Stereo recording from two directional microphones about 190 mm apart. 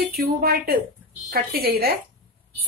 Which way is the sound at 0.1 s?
55° right (ahead or behind).